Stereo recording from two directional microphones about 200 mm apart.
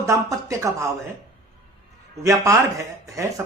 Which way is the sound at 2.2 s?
15° right (ahead or behind).